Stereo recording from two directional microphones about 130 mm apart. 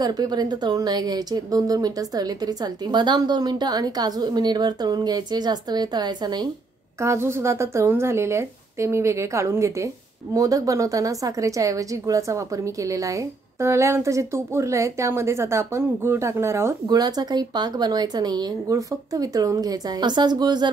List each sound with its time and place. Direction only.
0.0 s speech: 30° right (ahead or behind)
7.0 s a woman's voice: 20° right (ahead or behind)